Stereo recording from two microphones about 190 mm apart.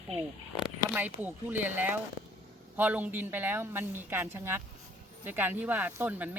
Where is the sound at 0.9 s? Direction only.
10° right (ahead or behind).